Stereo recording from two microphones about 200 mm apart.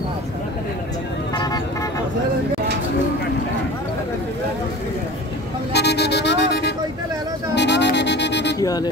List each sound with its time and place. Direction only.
1.3 s vehicle: 20° left (ahead or behind)
5.7 s vehicle: 55° left (ahead or behind)
7.5 s music: 60° left (ahead or behind)
8.5 s speech: 20° left (ahead or behind)